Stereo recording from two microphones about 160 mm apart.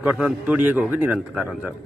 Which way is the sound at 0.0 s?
10° right (ahead or behind).